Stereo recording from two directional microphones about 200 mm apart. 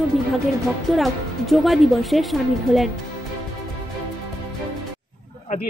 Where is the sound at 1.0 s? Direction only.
Centre (ahead or behind).